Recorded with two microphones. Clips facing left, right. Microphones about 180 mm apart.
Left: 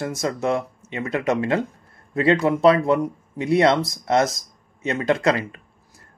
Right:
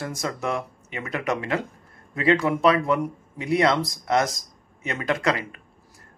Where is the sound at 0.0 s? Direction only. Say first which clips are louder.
Left 5 dB; 25° left (ahead or behind).